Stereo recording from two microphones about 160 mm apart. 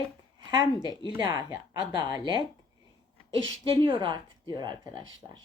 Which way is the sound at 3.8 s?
30° right (ahead or behind).